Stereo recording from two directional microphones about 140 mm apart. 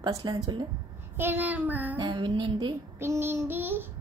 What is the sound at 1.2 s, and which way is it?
Speech, 15° right (ahead or behind).